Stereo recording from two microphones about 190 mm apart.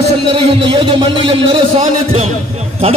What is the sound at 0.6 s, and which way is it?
Speech, 25° right (ahead or behind).